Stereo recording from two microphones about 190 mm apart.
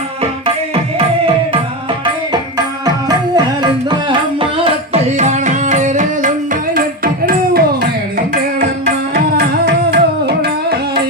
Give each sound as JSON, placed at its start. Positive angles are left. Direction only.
{"t": 2.8, "sound": "music", "side_deg": -20}
{"t": 5.1, "sound": "music", "side_deg": -40}
{"t": 9.6, "sound": "music", "side_deg": -60}